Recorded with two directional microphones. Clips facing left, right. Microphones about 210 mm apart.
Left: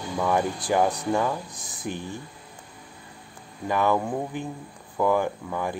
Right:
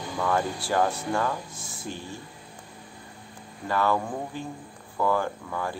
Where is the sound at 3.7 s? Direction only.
15° left (ahead or behind).